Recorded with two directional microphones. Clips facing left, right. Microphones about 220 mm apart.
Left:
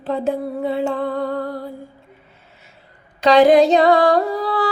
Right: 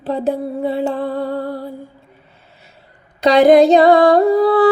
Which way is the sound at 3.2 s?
40° right (ahead or behind).